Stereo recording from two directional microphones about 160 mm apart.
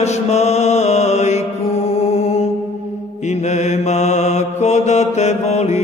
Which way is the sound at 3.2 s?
45° left (ahead or behind).